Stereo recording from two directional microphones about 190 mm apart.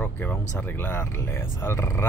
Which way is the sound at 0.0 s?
10° left (ahead or behind).